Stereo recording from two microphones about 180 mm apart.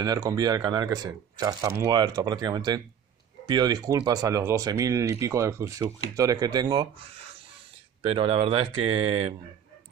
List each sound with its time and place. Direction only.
0.0 s speech: 20° right (ahead or behind)
8.0 s speech: 30° right (ahead or behind)